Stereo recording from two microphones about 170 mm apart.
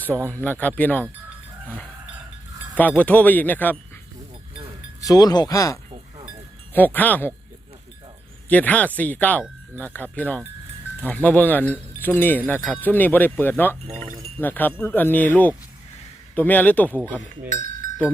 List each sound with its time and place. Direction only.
0.1 s speech: 5° left (ahead or behind)
0.4 s wind chime: 10° left (ahead or behind)
2.7 s wind chime: 10° left (ahead or behind)
5.0 s speech: 20° left (ahead or behind)
6.7 s wind chime: 10° left (ahead or behind)
8.4 s wind chime: 10° left (ahead or behind)